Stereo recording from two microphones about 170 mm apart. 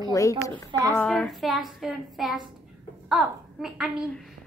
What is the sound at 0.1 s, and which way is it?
A woman's voice, 20° left (ahead or behind).